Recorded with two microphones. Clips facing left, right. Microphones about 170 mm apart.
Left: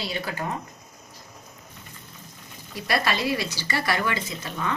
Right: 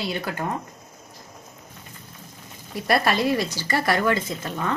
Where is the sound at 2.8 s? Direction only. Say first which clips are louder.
Right 4 dB; 50° right (ahead or behind).